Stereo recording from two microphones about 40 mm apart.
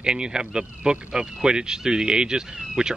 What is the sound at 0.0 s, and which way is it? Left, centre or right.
Speech, right.